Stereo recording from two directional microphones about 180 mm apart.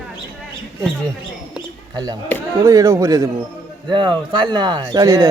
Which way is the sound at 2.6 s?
15° right (ahead or behind).